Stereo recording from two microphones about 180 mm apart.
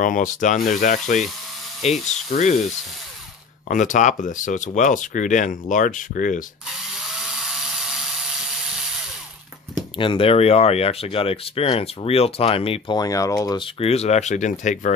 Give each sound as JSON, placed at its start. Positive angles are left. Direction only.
{"t": 0.0, "sound": "speech", "side_deg": 45}
{"t": 3.6, "sound": "speech", "side_deg": 45}
{"t": 9.9, "sound": "speech", "side_deg": 30}